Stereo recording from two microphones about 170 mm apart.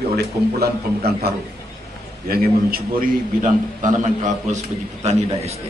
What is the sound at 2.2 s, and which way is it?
A man's voice, 60° right (ahead or behind).